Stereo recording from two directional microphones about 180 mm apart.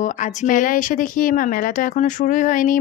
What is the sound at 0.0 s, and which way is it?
Speech, 45° left (ahead or behind).